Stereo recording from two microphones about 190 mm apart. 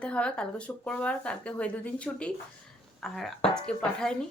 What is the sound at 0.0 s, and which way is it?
Speech, 5° left (ahead or behind).